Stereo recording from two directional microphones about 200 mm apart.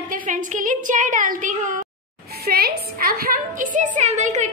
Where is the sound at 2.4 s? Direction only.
50° right (ahead or behind).